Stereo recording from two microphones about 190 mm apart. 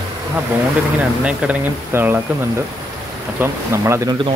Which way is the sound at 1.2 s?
5° right (ahead or behind).